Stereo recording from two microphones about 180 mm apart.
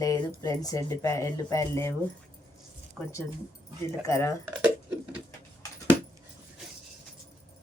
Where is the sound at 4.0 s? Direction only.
15° left (ahead or behind).